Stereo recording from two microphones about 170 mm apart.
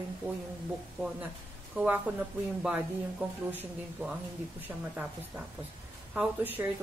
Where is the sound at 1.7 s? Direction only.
10° right (ahead or behind).